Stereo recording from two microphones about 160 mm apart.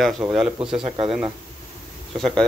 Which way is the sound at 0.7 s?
35° right (ahead or behind).